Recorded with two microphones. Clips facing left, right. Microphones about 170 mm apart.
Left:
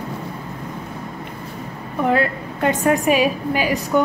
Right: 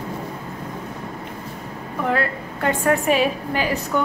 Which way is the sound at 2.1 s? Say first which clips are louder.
Left 4 dB; 20° left (ahead or behind).